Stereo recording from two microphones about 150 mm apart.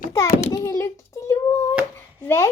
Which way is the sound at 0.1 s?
20° left (ahead or behind).